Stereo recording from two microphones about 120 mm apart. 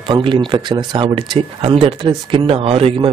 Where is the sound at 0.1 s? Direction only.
40° right (ahead or behind).